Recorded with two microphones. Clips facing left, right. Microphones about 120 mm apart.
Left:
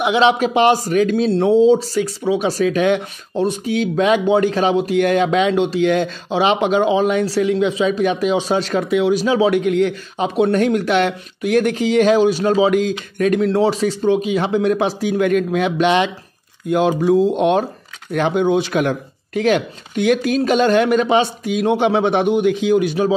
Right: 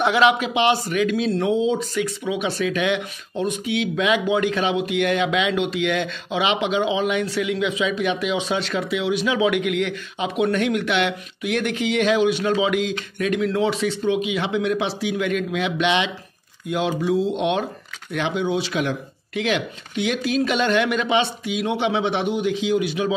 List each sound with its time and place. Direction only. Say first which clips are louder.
0.0 s a man's voice: left 3 dB; 25° left (ahead or behind)
0.4 s speech: left 6 dB; 40° left (ahead or behind)